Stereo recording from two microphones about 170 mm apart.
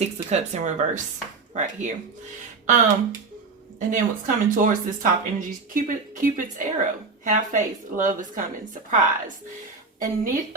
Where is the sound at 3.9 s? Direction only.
50° right (ahead or behind).